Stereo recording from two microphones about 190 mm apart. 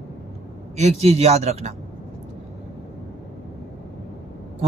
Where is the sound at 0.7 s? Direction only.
35° right (ahead or behind).